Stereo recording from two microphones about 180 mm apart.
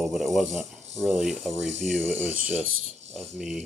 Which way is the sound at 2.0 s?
10° right (ahead or behind).